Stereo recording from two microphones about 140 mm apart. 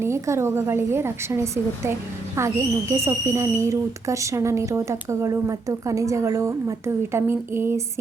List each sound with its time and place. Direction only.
0.0 s a woman's voice: 20° right (ahead or behind)